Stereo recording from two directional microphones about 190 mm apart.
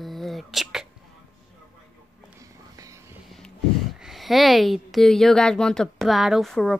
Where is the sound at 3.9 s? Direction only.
Centre (ahead or behind).